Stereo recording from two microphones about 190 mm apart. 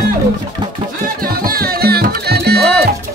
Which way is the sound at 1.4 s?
50° right (ahead or behind).